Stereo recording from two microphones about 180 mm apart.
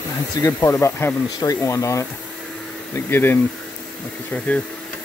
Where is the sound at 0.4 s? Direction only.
15° left (ahead or behind).